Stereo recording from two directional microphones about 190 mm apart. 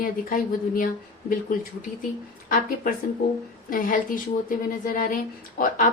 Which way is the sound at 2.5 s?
45° left (ahead or behind).